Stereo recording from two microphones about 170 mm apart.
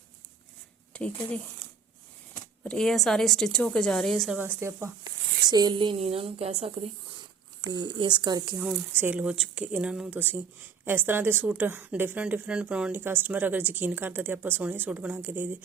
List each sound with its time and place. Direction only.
0.9 s speech: 5° left (ahead or behind)
2.6 s speech: 5° left (ahead or behind)
4.4 s a woman's voice: 15° right (ahead or behind)
5.5 s a woman's voice: 25° right (ahead or behind)
8.5 s a woman's voice: 5° right (ahead or behind)